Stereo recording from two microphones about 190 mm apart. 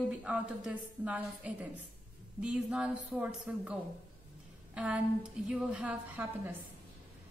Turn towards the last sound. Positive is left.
turn(degrees=-10)  # may be behind; listen again after turning